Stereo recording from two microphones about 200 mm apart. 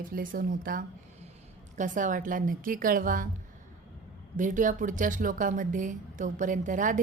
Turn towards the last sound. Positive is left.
turn(degrees=-40)  # may be behind; listen again after turning